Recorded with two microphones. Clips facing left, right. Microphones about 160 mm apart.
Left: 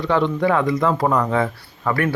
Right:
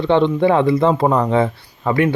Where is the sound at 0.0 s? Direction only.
25° right (ahead or behind).